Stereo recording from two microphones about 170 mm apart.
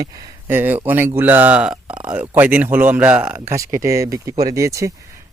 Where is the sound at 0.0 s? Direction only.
10° right (ahead or behind).